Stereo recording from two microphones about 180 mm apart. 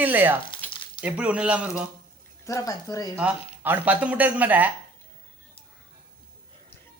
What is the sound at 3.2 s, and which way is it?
Speech, 10° right (ahead or behind).